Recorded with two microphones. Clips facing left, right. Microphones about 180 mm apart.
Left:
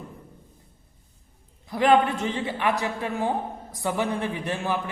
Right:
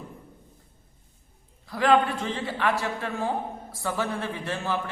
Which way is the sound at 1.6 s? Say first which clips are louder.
Left 2 dB; 20° left (ahead or behind).